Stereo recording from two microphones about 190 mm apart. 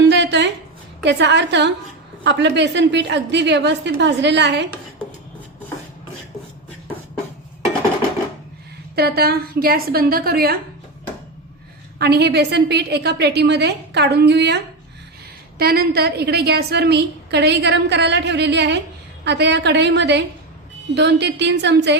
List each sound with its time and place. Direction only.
0.1 s a sound: 65° right (ahead or behind)
1.0 s a woman's voice: 65° right (ahead or behind)
9.0 s a woman's voice: 55° right (ahead or behind)
11.9 s a woman's voice: 60° right (ahead or behind)